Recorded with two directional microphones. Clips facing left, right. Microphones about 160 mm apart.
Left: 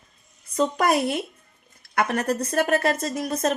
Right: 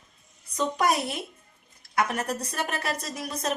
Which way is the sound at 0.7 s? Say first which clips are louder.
Left 2 dB; 60° left (ahead or behind).